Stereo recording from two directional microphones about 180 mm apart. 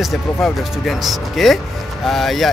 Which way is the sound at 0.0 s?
Centre (ahead or behind).